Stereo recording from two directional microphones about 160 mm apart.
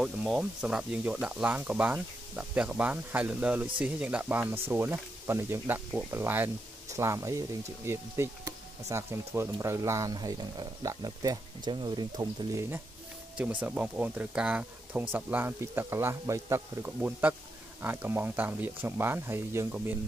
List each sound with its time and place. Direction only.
0.0 s speech: 5° right (ahead or behind)